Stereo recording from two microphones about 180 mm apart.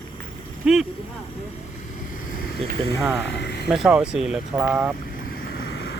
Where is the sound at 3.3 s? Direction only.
70° left (ahead or behind).